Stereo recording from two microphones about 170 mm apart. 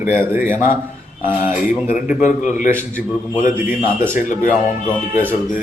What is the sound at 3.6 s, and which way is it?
Speech, 15° right (ahead or behind).